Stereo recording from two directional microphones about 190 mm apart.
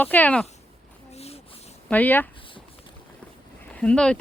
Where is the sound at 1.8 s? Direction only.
10° left (ahead or behind).